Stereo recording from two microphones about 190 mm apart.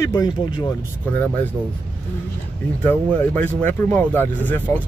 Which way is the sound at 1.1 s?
10° left (ahead or behind).